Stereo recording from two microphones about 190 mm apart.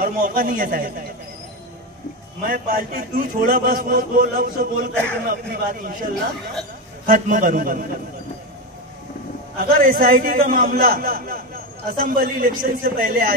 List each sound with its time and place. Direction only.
0.0 s a man's voice: 50° right (ahead or behind)
2.4 s a man's voice: 50° right (ahead or behind)
4.9 s a man's voice: 5° left (ahead or behind)
5.5 s a man's voice: 50° right (ahead or behind)
7.1 s a man's voice: 45° right (ahead or behind)
9.6 s a man's voice: 50° right (ahead or behind)